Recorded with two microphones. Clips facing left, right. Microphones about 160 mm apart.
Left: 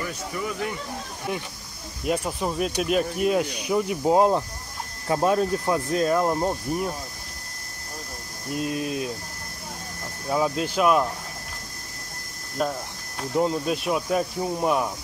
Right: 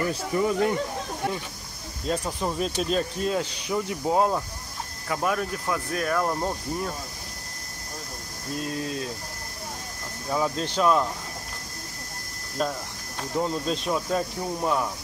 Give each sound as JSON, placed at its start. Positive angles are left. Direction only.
{"t": 0.1, "sound": "speech", "side_deg": -35}
{"t": 2.0, "sound": "speech", "side_deg": 10}
{"t": 8.5, "sound": "speech", "side_deg": 20}
{"t": 10.3, "sound": "speech", "side_deg": 10}
{"t": 12.6, "sound": "speech", "side_deg": 10}